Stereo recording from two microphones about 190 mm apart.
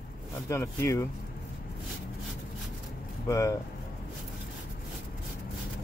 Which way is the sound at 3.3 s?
15° left (ahead or behind).